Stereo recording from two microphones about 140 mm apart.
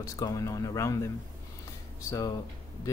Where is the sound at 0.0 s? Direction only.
25° left (ahead or behind).